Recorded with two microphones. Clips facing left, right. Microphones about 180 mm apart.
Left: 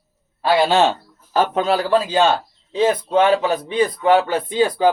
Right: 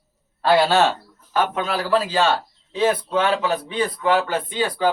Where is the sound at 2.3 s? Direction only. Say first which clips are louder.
Left 4 dB; 20° left (ahead or behind).